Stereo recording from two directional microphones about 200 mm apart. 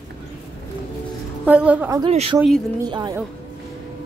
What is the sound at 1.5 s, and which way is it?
Speech, 5° right (ahead or behind).